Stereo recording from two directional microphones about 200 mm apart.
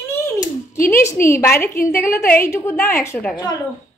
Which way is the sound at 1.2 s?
45° left (ahead or behind).